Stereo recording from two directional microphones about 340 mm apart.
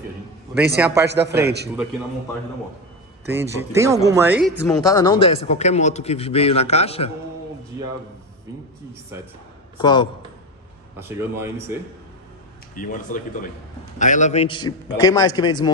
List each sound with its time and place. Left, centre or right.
0.7 s a man's voice: centre
1.0 s a man's voice: right
3.3 s speech: centre
9.8 s speech: centre
11.0 s speech: centre
12.7 s speech: left